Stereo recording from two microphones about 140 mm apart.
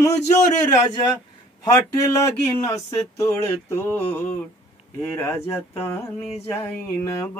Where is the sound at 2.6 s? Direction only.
25° left (ahead or behind).